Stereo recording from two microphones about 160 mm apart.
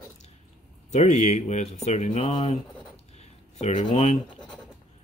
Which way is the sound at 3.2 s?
45° left (ahead or behind).